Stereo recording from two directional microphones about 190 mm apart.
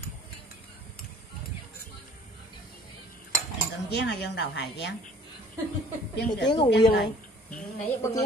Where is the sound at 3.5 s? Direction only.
60° left (ahead or behind).